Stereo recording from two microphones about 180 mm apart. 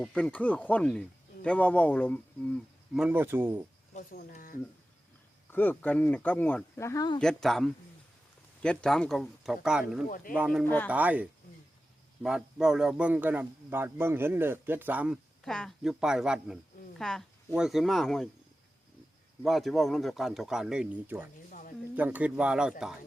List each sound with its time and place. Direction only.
0.0 s speech: 5° left (ahead or behind); by 3.7 s 10° right (ahead or behind)
3.9 s speech: 50° left (ahead or behind)
5.5 s speech: 10° left (ahead or behind)
7.2 s a man's voice: 5° left (ahead or behind)
19.4 s a man's voice: centre (ahead or behind)